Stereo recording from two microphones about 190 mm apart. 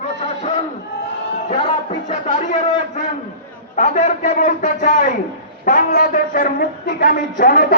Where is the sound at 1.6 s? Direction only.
35° left (ahead or behind).